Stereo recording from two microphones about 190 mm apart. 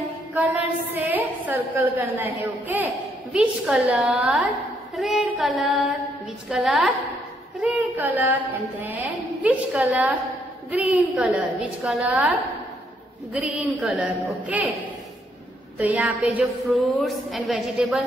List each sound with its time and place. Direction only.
0.3 s a woman's voice: 10° right (ahead or behind)
15.8 s a woman's voice: 10° right (ahead or behind)